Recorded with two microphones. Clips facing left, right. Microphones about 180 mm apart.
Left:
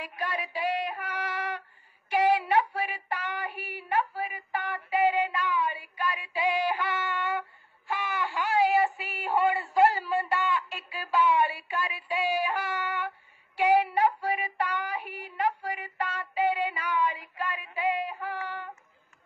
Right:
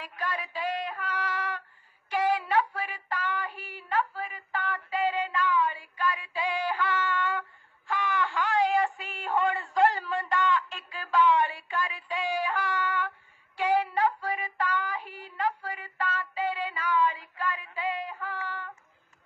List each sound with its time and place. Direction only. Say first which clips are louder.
0.0 s female singing: left 1 dB; 10° left (ahead or behind)
2.1 s child singing: left 2 dB; 10° left (ahead or behind)
7.9 s synthetic singing: right 2 dB; 10° left (ahead or behind)
13.6 s child singing: left 3 dB; 10° left (ahead or behind)